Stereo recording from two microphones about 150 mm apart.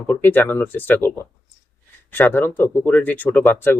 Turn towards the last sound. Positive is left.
turn(degrees=15)  # may be behind; listen again after turning